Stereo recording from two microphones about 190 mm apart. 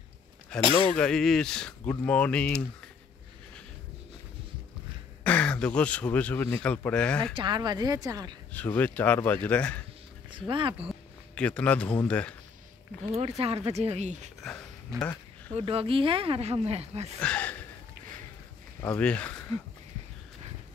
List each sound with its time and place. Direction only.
0.5 s speech: 5° left (ahead or behind)
5.2 s speech: 5° left (ahead or behind)
7.3 s speech: 25° right (ahead or behind)
8.5 s speech: 10° left (ahead or behind)
10.5 s speech: 25° right (ahead or behind)
11.3 s speech: 5° left (ahead or behind)
13.0 s speech: 35° right (ahead or behind)
14.4 s a sound: 5° left (ahead or behind)
15.5 s speech: 30° right (ahead or behind)
17.2 s speech: 5° left (ahead or behind)
18.8 s speech: 5° left (ahead or behind)